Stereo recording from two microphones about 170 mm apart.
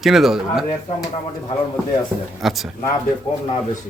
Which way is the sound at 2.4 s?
Centre (ahead or behind).